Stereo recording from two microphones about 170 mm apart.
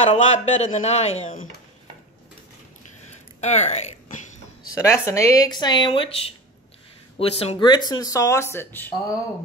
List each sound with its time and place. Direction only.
0.0 s speech: 45° left (ahead or behind)
3.3 s speech: 40° left (ahead or behind)
4.7 s speech: 20° left (ahead or behind)